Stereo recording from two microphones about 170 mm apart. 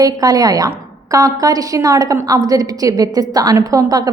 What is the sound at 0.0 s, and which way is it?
A woman's voice, 20° right (ahead or behind).